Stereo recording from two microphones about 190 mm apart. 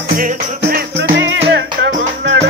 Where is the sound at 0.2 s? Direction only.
50° right (ahead or behind).